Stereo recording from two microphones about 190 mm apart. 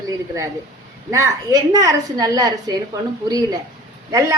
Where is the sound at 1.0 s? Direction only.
15° right (ahead or behind).